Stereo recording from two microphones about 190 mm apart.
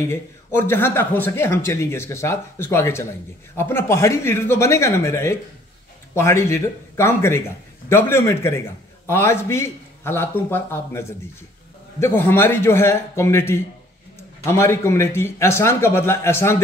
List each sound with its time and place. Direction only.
0.0 s speech: 15° left (ahead or behind)